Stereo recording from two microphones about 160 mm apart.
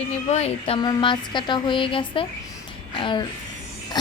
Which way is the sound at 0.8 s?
30° left (ahead or behind).